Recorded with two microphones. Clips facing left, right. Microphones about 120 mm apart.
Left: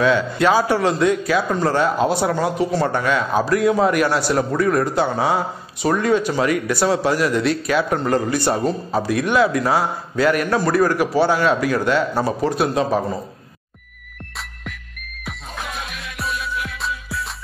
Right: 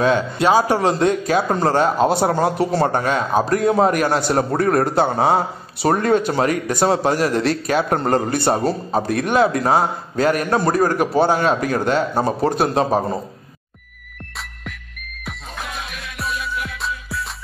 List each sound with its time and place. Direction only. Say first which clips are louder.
0.4 s a man's voice: right 1 dB; 25° right (ahead or behind)
0.7 s a man's voice: even; 35° right (ahead or behind)
4.6 s a man's voice: right 2 dB; 50° right (ahead or behind)
16.2 s music: even; centre (ahead or behind)